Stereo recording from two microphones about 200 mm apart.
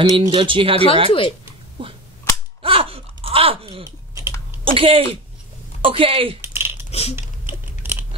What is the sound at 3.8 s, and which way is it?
Typing, 15° right (ahead or behind).